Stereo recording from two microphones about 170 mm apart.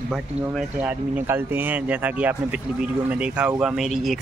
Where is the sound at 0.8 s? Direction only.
10° right (ahead or behind).